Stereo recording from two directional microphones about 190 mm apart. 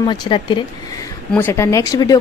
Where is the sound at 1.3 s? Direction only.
10° left (ahead or behind).